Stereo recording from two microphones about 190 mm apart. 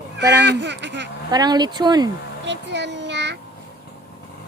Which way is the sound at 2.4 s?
65° right (ahead or behind).